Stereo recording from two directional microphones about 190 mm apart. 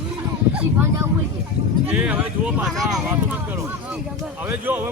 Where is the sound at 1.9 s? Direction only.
5° right (ahead or behind).